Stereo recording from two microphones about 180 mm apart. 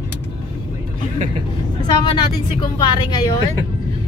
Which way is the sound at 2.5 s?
25° left (ahead or behind).